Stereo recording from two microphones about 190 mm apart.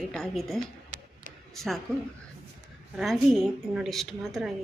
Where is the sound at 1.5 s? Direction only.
Centre (ahead or behind).